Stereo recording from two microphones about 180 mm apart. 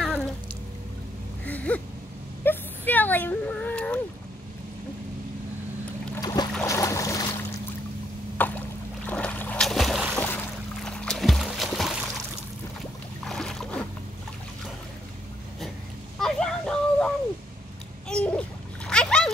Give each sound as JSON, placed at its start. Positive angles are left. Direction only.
{"t": 1.4, "sound": "gasp", "side_deg": 10}
{"t": 2.4, "sound": "a sound", "side_deg": 10}
{"t": 6.1, "sound": "boat", "side_deg": 20}
{"t": 8.4, "sound": "rowboat", "side_deg": 10}
{"t": 10.2, "sound": "music", "side_deg": 5}
{"t": 13.2, "sound": "boat", "side_deg": 0}
{"t": 16.2, "sound": "a sound", "side_deg": 5}
{"t": 18.9, "sound": "splash", "side_deg": 5}